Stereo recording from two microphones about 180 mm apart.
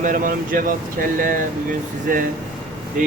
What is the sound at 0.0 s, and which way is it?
Speech, 50° right (ahead or behind).